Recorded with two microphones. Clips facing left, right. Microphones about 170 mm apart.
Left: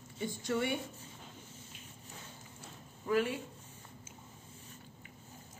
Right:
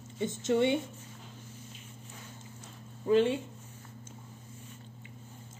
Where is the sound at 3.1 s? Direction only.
25° right (ahead or behind).